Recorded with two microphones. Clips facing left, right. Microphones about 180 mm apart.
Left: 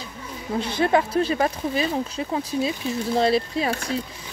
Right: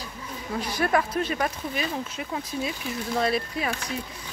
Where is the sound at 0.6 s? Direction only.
25° left (ahead or behind).